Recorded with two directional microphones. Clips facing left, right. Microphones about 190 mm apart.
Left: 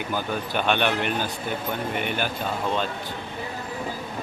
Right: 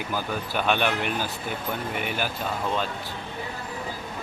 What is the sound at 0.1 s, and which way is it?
Speech, 5° right (ahead or behind).